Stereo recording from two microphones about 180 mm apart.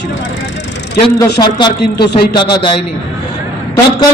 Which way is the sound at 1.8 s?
65° left (ahead or behind).